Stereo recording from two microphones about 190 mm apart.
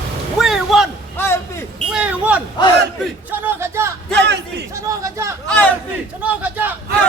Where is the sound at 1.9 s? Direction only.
5° right (ahead or behind).